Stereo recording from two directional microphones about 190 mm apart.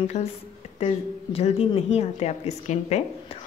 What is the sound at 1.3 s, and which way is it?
Speech, 30° left (ahead or behind).